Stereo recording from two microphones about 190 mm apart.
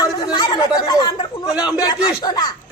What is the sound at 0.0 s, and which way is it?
Chatter, 20° left (ahead or behind).